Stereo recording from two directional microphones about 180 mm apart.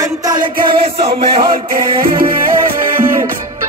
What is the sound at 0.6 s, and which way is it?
Music, 30° right (ahead or behind).